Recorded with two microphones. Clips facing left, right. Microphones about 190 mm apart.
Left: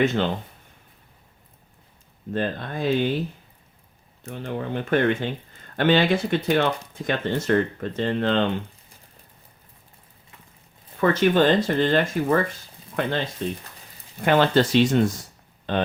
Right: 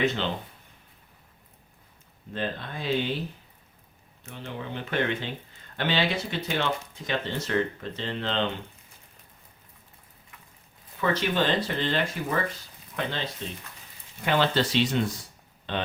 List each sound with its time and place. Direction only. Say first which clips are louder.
0.0 s speech: left 5 dB; 50° left (ahead or behind)
2.3 s speech: left 6 dB; 50° left (ahead or behind)
4.3 s speech: left 7 dB; 50° left (ahead or behind)
11.0 s speech: left 7 dB; 50° left (ahead or behind)